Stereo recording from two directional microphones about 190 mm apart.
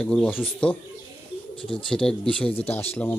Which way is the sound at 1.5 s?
30° left (ahead or behind).